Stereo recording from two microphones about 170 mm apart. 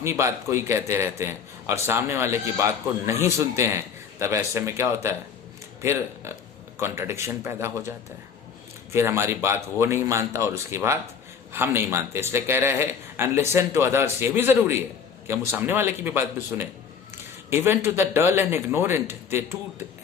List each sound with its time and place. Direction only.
0.0 s a man's voice: 15° right (ahead or behind)